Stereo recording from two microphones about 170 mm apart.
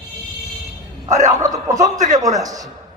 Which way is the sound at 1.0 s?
45° right (ahead or behind).